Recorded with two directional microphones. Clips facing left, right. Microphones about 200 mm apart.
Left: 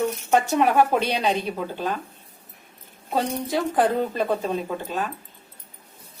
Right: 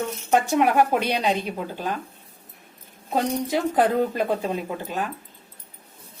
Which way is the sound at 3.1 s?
15° right (ahead or behind).